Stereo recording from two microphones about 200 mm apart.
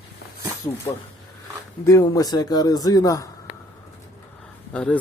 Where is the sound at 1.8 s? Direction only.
15° left (ahead or behind).